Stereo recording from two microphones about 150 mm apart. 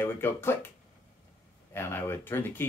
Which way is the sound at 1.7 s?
15° left (ahead or behind).